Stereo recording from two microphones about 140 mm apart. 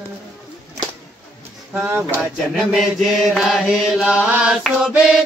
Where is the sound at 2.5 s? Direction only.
Centre (ahead or behind).